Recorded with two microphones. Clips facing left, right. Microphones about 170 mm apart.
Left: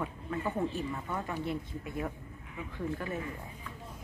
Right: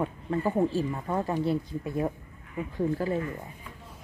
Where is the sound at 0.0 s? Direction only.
35° right (ahead or behind).